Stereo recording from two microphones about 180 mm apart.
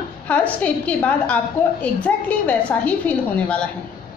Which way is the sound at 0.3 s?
10° left (ahead or behind).